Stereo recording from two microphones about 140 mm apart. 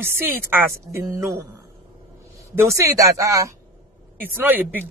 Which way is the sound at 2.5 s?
20° right (ahead or behind).